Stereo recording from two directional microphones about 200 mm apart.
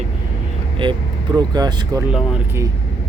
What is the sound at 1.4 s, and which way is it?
Speech, 20° right (ahead or behind).